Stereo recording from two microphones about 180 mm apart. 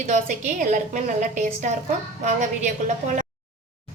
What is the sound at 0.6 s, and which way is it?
A woman's voice, 45° right (ahead or behind).